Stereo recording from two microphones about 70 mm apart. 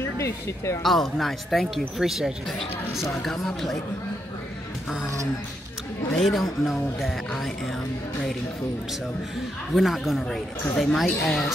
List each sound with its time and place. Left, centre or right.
0.0 s speech: left
0.8 s speech: centre
6.1 s speech: centre
9.8 s speech: centre